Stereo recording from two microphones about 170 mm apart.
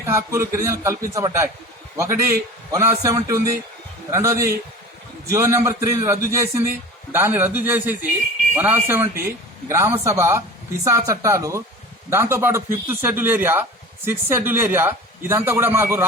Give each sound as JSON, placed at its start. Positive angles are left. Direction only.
{"t": 0.0, "sound": "a man's voice", "side_deg": -15}